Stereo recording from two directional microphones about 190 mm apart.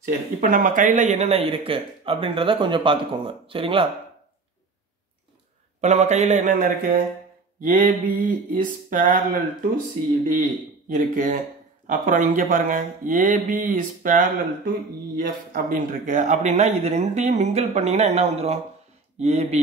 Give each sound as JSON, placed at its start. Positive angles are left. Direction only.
{"t": 0.0, "sound": "speech", "side_deg": -50}
{"t": 5.8, "sound": "speech", "side_deg": -40}
{"t": 10.9, "sound": "speech", "side_deg": -45}